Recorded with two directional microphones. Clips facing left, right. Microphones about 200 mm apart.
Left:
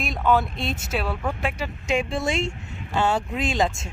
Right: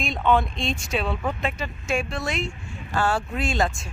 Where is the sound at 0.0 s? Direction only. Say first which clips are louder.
Even; 5° left (ahead or behind).